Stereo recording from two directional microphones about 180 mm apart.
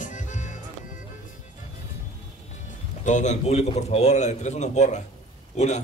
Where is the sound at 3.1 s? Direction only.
40° left (ahead or behind).